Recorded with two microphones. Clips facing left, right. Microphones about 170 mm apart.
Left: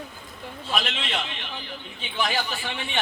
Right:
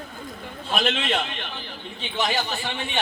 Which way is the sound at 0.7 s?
50° right (ahead or behind).